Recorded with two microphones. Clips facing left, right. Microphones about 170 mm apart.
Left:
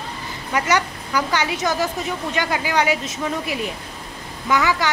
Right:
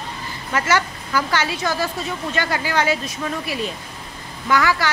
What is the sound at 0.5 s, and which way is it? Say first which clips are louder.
Speech: even; 15° left (ahead or behind).